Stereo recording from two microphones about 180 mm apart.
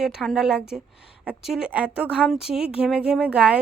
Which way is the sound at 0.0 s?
5° right (ahead or behind).